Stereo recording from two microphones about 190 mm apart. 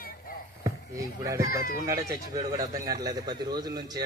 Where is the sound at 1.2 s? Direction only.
15° right (ahead or behind).